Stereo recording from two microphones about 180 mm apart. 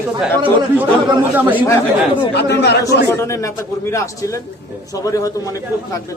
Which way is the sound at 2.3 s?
70° left (ahead or behind).